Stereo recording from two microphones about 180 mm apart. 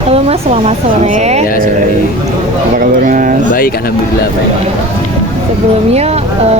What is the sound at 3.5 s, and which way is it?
Speech, 55° left (ahead or behind).